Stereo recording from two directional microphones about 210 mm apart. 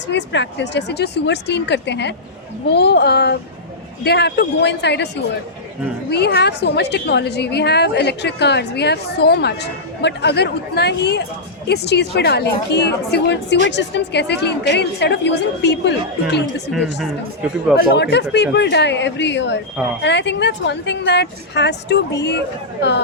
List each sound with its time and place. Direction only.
0.1 s a woman's voice: 55° left (ahead or behind)
16.7 s speech: centre (ahead or behind)
17.9 s a woman's voice: 55° left (ahead or behind)